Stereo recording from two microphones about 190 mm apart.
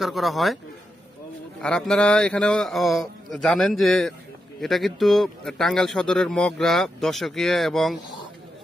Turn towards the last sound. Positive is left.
turn(degrees=0)  # may be behind; listen again after turning